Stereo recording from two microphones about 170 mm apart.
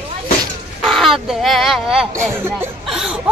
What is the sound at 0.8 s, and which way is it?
Speech, centre (ahead or behind).